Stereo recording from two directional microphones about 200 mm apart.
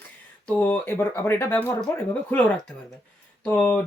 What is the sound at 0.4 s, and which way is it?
Speech, 5° left (ahead or behind).